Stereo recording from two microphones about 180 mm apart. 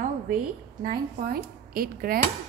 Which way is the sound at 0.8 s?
55° right (ahead or behind).